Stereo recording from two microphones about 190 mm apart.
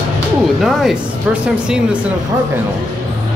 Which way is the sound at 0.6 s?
5° right (ahead or behind).